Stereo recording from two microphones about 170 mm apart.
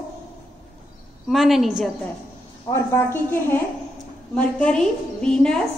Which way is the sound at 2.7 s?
15° left (ahead or behind).